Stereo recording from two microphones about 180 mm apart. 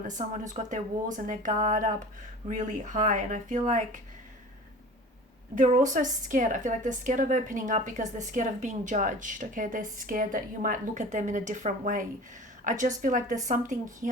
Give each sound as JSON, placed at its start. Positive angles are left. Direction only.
{"t": 0.5, "sound": "a woman's voice", "side_deg": -45}
{"t": 5.5, "sound": "a woman's voice", "side_deg": -45}